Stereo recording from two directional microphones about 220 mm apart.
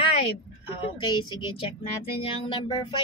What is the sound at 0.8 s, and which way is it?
Child singing, 20° left (ahead or behind).